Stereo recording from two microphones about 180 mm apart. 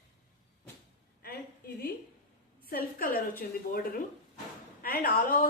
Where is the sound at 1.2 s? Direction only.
55° left (ahead or behind).